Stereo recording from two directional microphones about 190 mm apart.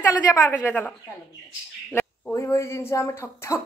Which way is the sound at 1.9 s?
15° left (ahead or behind).